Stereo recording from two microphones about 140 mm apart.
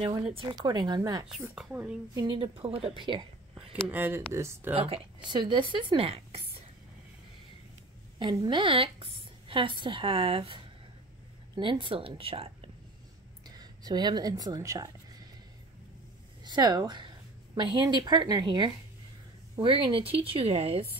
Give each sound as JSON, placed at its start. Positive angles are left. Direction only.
{"t": 0.0, "sound": "a woman's voice", "side_deg": -40}
{"t": 1.5, "sound": "speech", "side_deg": -10}
{"t": 2.1, "sound": "a woman's voice", "side_deg": -30}
{"t": 3.8, "sound": "speech", "side_deg": -15}
{"t": 4.7, "sound": "a woman's voice", "side_deg": -40}
{"t": 8.2, "sound": "a woman's voice", "side_deg": -35}
{"t": 13.5, "sound": "a sound", "side_deg": -30}
{"t": 16.4, "sound": "a woman's voice", "side_deg": -30}